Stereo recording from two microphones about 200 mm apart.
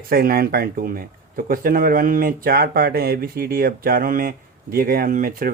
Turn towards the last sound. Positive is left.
turn(degrees=-45)  # may be behind; listen again after turning